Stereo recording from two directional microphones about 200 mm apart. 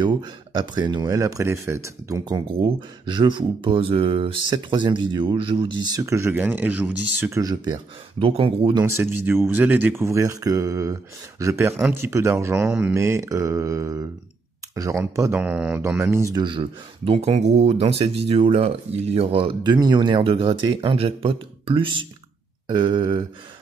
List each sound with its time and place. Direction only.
0.0 s speech: 20° right (ahead or behind)
9.2 s speech: 10° right (ahead or behind)
11.7 s speech: centre (ahead or behind)
12.0 s speech: 15° right (ahead or behind)
16.3 s speech: 25° right (ahead or behind)